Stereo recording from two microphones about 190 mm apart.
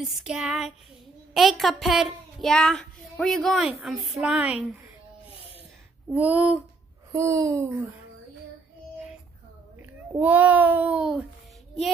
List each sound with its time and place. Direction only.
0.0 s a child's voice: 5° right (ahead or behind)
6.0 s a child's voice: 10° right (ahead or behind)
9.8 s a child's voice: 10° right (ahead or behind)